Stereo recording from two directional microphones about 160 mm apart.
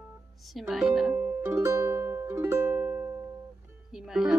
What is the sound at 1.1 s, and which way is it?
Music, 15° right (ahead or behind).